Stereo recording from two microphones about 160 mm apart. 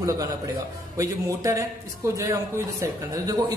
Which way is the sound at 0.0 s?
20° right (ahead or behind).